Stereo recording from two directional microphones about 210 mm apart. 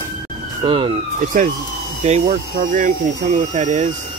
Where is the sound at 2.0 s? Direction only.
35° right (ahead or behind).